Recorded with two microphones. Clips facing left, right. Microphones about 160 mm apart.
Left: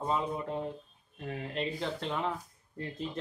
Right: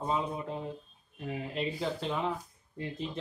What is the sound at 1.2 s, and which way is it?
Speech, 5° right (ahead or behind).